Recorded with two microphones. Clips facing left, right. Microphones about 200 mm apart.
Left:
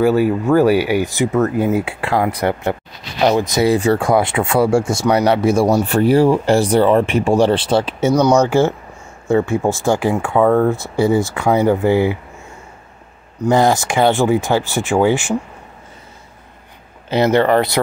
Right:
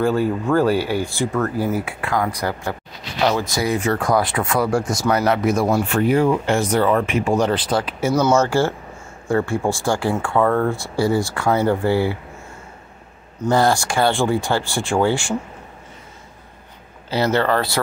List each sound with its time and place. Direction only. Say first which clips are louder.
0.0 s speech: left 5 dB; 10° left (ahead or behind); by 8.1 s 25° left (ahead or behind)
8.1 s speech: left 4 dB; 15° left (ahead or behind)
13.5 s speech: left 3 dB; 20° left (ahead or behind)
17.1 s speech: left 5 dB; 20° left (ahead or behind)